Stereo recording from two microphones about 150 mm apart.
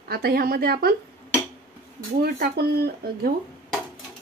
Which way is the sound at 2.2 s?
90° right.